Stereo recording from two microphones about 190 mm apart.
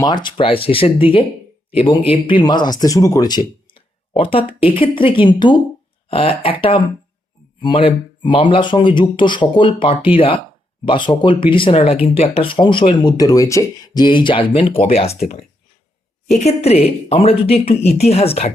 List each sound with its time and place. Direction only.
0.0 s a woman's voice: 25° left (ahead or behind)
16.3 s a woman's voice: 35° left (ahead or behind)